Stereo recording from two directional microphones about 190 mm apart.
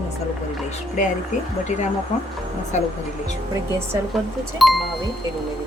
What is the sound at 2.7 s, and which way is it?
Speech, 35° left (ahead or behind).